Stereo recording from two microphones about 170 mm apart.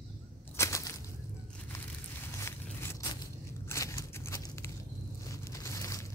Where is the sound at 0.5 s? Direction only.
20° left (ahead or behind).